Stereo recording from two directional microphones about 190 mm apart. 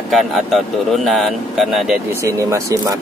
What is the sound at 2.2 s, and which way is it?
Speech, 15° right (ahead or behind).